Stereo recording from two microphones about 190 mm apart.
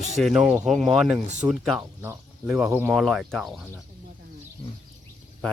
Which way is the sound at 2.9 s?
Centre (ahead or behind).